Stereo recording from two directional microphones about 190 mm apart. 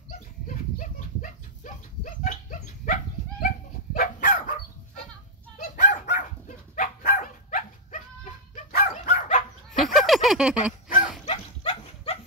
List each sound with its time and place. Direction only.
0.7 s dog: 45° left (ahead or behind)
5.6 s dog: 40° left (ahead or behind)
9.9 s a sound: centre (ahead or behind)
11.2 s dog: 35° left (ahead or behind)